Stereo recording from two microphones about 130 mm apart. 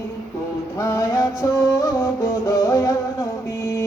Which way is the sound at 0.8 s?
20° left (ahead or behind).